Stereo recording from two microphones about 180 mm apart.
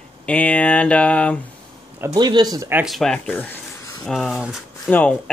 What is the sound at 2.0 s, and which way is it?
Speech, 20° right (ahead or behind).